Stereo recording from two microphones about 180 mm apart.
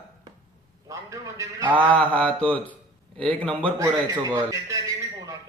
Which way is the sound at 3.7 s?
20° right (ahead or behind).